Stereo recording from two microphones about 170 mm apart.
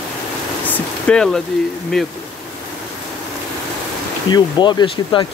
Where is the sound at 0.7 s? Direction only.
5° left (ahead or behind).